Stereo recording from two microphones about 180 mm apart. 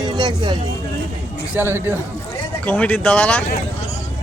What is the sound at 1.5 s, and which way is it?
Speech, 10° right (ahead or behind).